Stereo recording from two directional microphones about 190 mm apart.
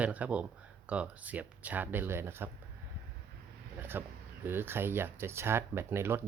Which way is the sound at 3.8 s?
10° right (ahead or behind).